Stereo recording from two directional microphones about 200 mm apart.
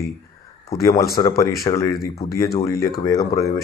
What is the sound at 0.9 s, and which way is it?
Speech, 50° left (ahead or behind).